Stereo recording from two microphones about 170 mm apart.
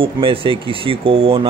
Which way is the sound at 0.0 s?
30° right (ahead or behind).